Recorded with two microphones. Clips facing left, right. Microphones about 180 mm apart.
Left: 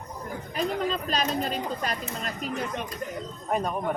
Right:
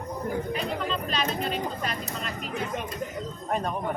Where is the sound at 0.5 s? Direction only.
40° left (ahead or behind).